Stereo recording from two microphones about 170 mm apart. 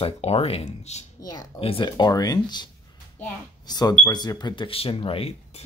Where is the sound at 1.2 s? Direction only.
20° left (ahead or behind); by 5.6 s 35° left (ahead or behind).